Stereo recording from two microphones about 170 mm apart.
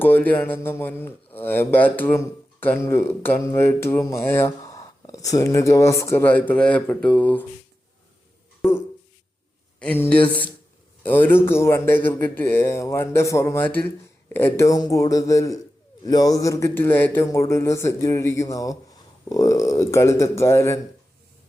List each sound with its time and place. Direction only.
0.0 s speech: 10° left (ahead or behind)
9.8 s speech: 10° left (ahead or behind)